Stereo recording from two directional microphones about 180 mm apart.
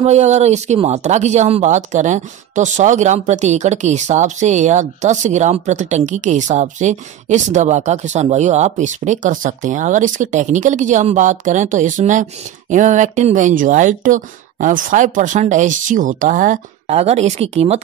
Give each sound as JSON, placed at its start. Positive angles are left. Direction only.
{"t": 0.0, "sound": "speech", "side_deg": -40}